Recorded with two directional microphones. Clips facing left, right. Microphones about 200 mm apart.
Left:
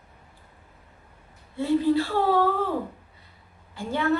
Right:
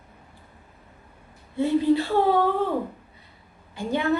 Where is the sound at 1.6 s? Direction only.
20° right (ahead or behind).